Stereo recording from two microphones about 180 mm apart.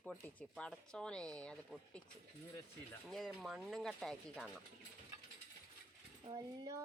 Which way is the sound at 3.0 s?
Centre (ahead or behind).